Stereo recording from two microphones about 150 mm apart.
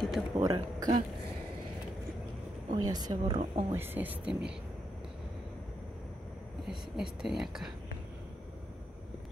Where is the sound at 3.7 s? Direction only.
15° right (ahead or behind).